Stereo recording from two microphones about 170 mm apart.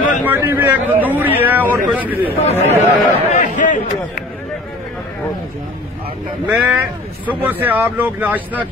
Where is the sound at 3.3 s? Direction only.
45° left (ahead or behind).